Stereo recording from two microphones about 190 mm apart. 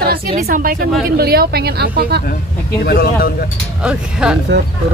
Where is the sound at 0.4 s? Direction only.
50° right (ahead or behind).